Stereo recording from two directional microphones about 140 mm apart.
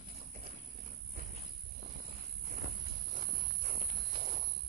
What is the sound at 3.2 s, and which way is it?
Horse, 35° right (ahead or behind).